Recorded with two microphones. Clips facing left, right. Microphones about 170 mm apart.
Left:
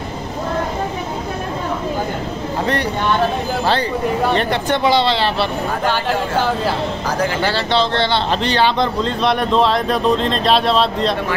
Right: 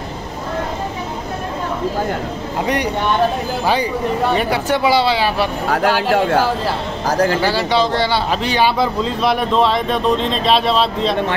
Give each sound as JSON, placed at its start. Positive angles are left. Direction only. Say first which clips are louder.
{"t": 2.6, "sound": "speech", "louder": "right 1 dB", "side_deg": -15}
{"t": 4.3, "sound": "speech", "louder": "even", "side_deg": -10}
{"t": 7.1, "sound": "speech", "louder": "right 5 dB", "side_deg": -40}
{"t": 7.4, "sound": "speech", "louder": "right 1 dB", "side_deg": -10}